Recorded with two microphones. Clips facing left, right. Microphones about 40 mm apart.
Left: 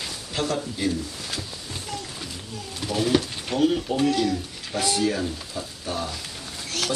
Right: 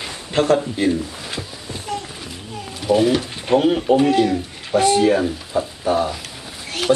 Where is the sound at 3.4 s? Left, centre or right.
Right.